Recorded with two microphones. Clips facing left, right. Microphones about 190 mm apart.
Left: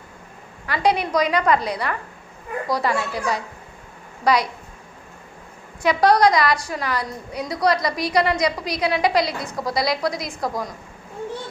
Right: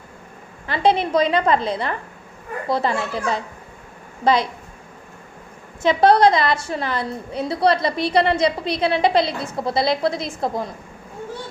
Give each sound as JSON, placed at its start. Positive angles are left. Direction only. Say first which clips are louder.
{"t": 0.7, "sound": "a woman's voice", "louder": "right 2 dB", "side_deg": -25}
{"t": 5.8, "sound": "a woman's voice", "louder": "right 2 dB", "side_deg": -25}